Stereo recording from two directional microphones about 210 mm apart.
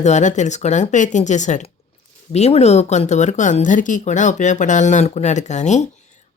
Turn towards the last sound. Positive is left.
turn(degrees=35)  # may be behind; listen again after turning